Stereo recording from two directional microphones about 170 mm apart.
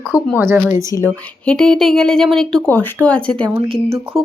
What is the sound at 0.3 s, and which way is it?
Speech, 15° right (ahead or behind).